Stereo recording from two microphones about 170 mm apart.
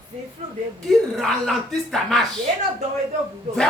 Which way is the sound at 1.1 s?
Centre (ahead or behind).